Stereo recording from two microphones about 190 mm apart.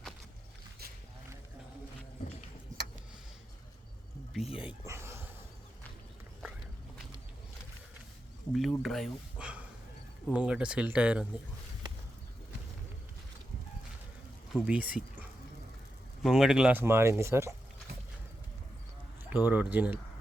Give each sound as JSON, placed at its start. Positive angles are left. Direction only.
{"t": 2.7, "sound": "a sound", "side_deg": -45}
{"t": 4.9, "sound": "a sound", "side_deg": -15}
{"t": 8.5, "sound": "speech", "side_deg": 0}
{"t": 14.5, "sound": "speech", "side_deg": -5}
{"t": 16.2, "sound": "speech", "side_deg": -5}
{"t": 19.2, "sound": "speech", "side_deg": -10}